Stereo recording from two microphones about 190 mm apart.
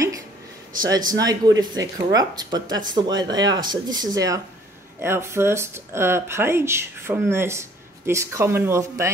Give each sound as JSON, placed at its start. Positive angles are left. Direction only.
{"t": 0.8, "sound": "speech", "side_deg": -20}